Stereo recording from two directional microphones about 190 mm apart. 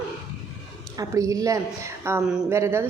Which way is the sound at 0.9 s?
20° right (ahead or behind).